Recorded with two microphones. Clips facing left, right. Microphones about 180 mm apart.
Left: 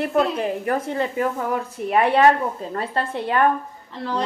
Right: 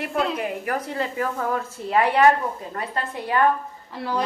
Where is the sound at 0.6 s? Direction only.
25° left (ahead or behind).